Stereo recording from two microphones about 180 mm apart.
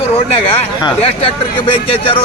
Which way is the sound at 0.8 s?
25° left (ahead or behind).